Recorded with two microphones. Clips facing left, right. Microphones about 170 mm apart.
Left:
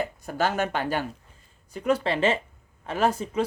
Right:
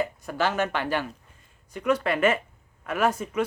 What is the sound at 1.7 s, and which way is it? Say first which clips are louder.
Speech: even; 30° left (ahead or behind).